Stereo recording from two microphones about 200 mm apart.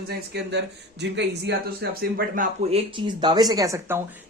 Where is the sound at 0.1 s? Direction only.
55° right (ahead or behind).